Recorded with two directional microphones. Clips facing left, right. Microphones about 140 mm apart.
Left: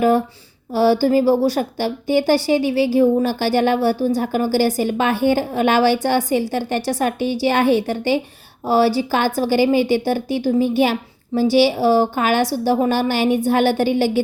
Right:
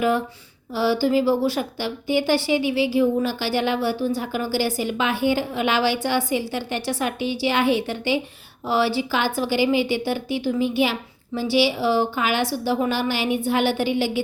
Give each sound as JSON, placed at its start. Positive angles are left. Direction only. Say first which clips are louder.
{"t": 0.7, "sound": "a woman's voice", "louder": "left 5 dB", "side_deg": 45}